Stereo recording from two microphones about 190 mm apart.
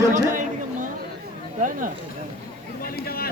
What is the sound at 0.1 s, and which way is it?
Chatter, 45° right (ahead or behind).